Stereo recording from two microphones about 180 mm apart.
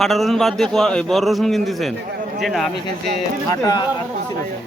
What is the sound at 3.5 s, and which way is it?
Speech, 20° left (ahead or behind).